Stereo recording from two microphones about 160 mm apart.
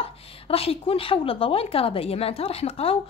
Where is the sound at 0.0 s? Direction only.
35° left (ahead or behind).